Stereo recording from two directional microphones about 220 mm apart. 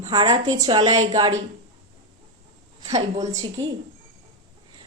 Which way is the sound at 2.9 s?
15° right (ahead or behind).